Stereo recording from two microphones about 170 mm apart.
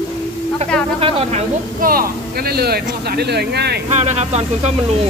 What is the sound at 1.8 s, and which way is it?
Speech, 60° right (ahead or behind).